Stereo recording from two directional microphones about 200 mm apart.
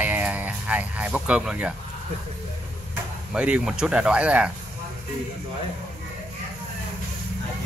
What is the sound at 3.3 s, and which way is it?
Speech, 5° right (ahead or behind).